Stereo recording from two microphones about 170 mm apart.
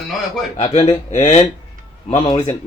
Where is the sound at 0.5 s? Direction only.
35° left (ahead or behind).